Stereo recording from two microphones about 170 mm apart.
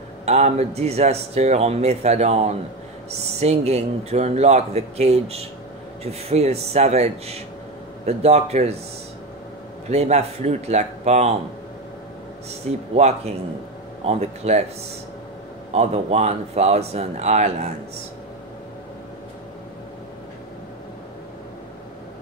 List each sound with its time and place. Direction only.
0.2 s speech: 40° right (ahead or behind)
9.8 s speech: 40° right (ahead or behind)
12.9 s speech: 40° right (ahead or behind)
15.7 s speech: 40° right (ahead or behind)